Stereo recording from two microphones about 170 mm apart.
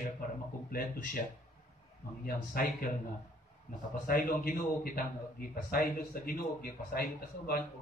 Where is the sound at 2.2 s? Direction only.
60° left (ahead or behind).